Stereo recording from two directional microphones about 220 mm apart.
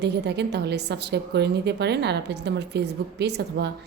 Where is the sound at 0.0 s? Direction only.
50° right (ahead or behind).